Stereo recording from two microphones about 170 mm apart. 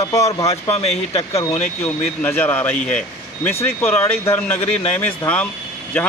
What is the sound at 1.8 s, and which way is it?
Speech, 10° left (ahead or behind).